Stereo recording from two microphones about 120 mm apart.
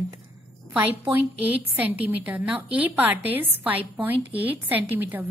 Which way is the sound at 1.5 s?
15° right (ahead or behind).